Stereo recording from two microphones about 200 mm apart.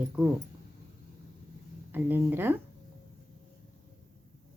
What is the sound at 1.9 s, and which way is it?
Speech, 10° right (ahead or behind).